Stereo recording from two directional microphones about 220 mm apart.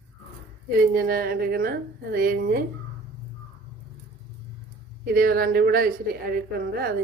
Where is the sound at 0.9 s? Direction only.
40° right (ahead or behind).